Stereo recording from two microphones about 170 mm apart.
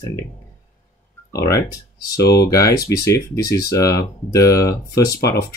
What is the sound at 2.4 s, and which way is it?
Speech, 20° left (ahead or behind).